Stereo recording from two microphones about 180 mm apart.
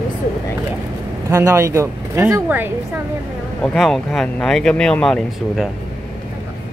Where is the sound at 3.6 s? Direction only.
Centre (ahead or behind).